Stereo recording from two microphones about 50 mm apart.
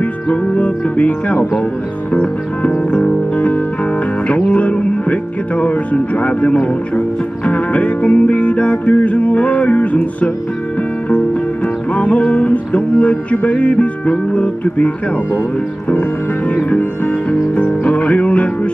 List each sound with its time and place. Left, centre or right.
0.0 s music: left
15.9 s music: left